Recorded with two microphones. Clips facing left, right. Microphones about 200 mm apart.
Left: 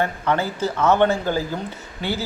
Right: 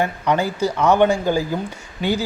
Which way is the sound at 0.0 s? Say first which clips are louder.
Right 2 dB; 15° right (ahead or behind).